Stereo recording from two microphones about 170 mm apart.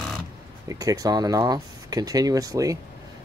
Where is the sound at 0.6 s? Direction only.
20° right (ahead or behind).